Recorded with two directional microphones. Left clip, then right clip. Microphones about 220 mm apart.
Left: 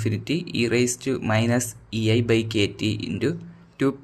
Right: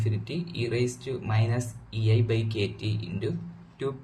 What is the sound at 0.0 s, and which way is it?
Speech, 45° left (ahead or behind).